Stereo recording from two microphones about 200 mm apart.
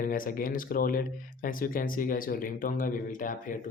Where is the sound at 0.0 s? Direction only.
45° left (ahead or behind).